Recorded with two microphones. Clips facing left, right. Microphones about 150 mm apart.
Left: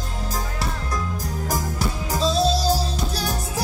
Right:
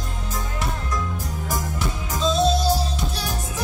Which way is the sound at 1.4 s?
35° left (ahead or behind).